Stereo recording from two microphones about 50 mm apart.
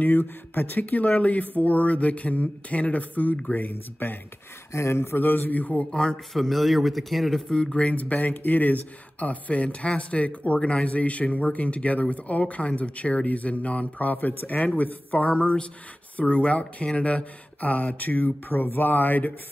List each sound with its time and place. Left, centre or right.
0.0 s speech: left
4.0 s a man's voice: left
4.7 s a man's voice: left
5.9 s speech: centre
6.3 s a man's voice: centre
7.5 s speech: centre; by 19.3 s left